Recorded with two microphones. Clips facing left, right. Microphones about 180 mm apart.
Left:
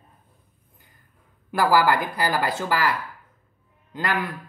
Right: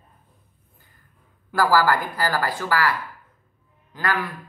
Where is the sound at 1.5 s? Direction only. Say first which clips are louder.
Even; 20° left (ahead or behind).